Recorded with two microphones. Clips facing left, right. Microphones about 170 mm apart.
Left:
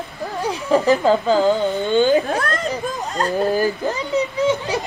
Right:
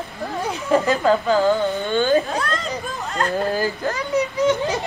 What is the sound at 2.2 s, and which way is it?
Speech, 55° left (ahead or behind).